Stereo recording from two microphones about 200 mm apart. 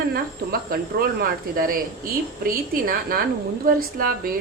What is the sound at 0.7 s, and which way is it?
Speech, 50° right (ahead or behind).